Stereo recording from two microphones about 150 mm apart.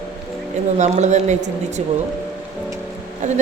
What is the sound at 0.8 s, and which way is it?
A woman's voice, 50° right (ahead or behind).